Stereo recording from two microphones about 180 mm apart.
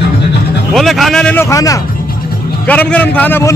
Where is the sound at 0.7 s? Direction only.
Centre (ahead or behind).